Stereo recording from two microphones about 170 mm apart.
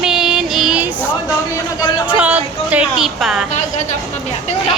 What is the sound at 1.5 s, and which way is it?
Speech, 20° left (ahead or behind).